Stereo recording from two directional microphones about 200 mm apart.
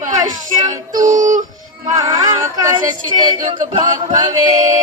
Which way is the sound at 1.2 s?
40° right (ahead or behind).